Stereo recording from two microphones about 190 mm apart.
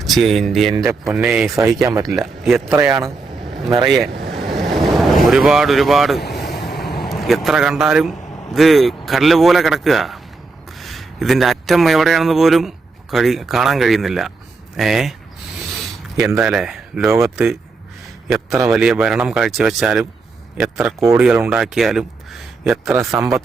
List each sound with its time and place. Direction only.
0.0 s a man's voice: centre (ahead or behind)
0.9 s speech: 15° right (ahead or behind)
1.2 s a man's voice: centre (ahead or behind)
1.8 s speech: 20° right (ahead or behind)
2.0 s a man's voice: centre (ahead or behind)
3.4 s vehicle: centre (ahead or behind)
4.9 s a man's voice: centre (ahead or behind)
16.1 s a man's voice: centre (ahead or behind)